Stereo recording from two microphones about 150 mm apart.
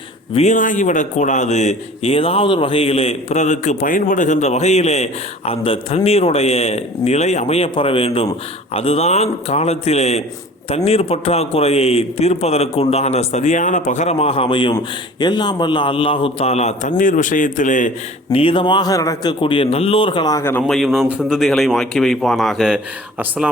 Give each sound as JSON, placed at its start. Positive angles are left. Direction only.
{"t": 0.3, "sound": "a man's voice", "side_deg": 55}
{"t": 17.0, "sound": "a man's voice", "side_deg": 60}
{"t": 18.3, "sound": "a man's voice", "side_deg": 35}
{"t": 20.7, "sound": "speech", "side_deg": 0}